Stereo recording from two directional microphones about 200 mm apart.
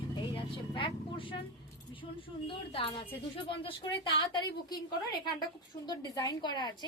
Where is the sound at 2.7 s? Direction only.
30° left (ahead or behind).